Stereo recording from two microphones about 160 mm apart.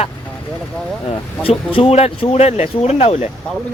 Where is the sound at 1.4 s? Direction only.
35° left (ahead or behind).